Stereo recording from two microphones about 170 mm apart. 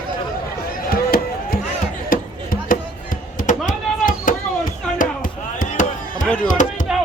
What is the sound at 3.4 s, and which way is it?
Chop, 50° left (ahead or behind).